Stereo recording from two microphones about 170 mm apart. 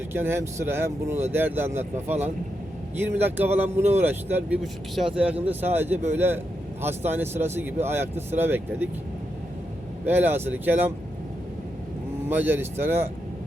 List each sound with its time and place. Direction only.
0.1 s speech: 15° right (ahead or behind)
1.8 s a man's voice: 40° right (ahead or behind)
3.0 s speech: 10° right (ahead or behind)
10.1 s speech: 10° right (ahead or behind)
12.3 s speech: 10° right (ahead or behind)